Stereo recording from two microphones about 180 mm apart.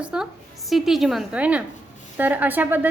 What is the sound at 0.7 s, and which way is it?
A woman's voice, centre (ahead or behind).